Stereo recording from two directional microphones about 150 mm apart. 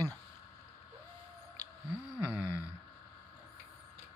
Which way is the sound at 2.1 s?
15° right (ahead or behind).